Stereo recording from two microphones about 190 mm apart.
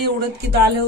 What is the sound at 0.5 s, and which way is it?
Speech, 60° right (ahead or behind).